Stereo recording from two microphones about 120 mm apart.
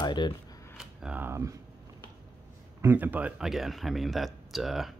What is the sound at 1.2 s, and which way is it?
Speech, 25° right (ahead or behind).